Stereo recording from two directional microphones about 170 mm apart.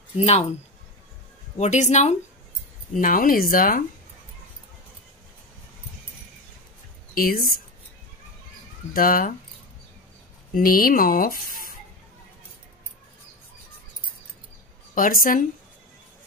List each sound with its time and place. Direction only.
0.2 s speech: 40° left (ahead or behind)
1.6 s speech: 45° left (ahead or behind)
2.9 s speech: 55° left (ahead or behind)
7.2 s speech: 55° left (ahead or behind)
8.9 s speech: 55° left (ahead or behind)
10.5 s speech: 55° left (ahead or behind)
15.0 s speech: 55° left (ahead or behind)